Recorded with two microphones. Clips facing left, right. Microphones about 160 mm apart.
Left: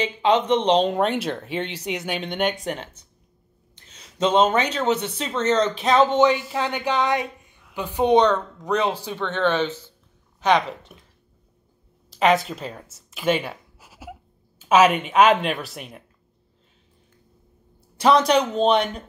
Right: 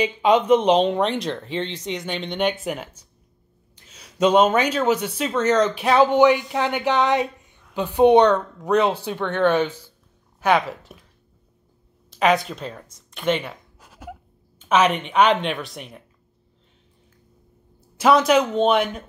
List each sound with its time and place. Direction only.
0.0 s speech: 10° right (ahead or behind)
3.7 s a sound: 10° right (ahead or behind)
4.6 s a woman's voice: 10° right (ahead or behind)
5.4 s speech: 25° left (ahead or behind)
5.8 s a woman's voice: 10° right (ahead or behind)
12.1 s speech: centre (ahead or behind)
17.9 s speech: 5° right (ahead or behind)